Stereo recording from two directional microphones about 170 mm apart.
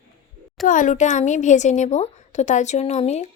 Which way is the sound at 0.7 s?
50° left (ahead or behind).